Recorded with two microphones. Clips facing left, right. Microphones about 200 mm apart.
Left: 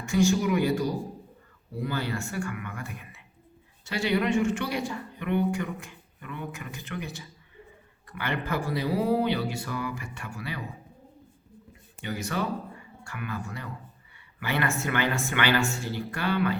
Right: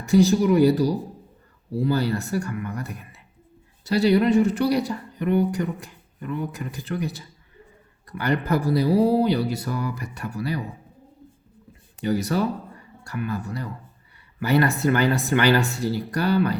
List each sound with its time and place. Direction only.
0.0 s speech: 35° right (ahead or behind)
11.9 s speech: 35° right (ahead or behind)